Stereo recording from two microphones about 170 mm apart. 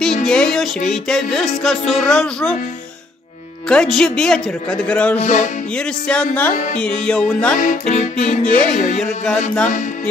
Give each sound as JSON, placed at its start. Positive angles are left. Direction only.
{"t": 0.0, "sound": "music", "side_deg": 5}
{"t": 0.8, "sound": "speech", "side_deg": 5}
{"t": 3.6, "sound": "speech", "side_deg": 5}
{"t": 5.2, "sound": "music", "side_deg": 45}
{"t": 5.8, "sound": "speech", "side_deg": 5}
{"t": 6.5, "sound": "music", "side_deg": 50}
{"t": 6.8, "sound": "speech", "side_deg": 5}
{"t": 7.5, "sound": "music", "side_deg": 45}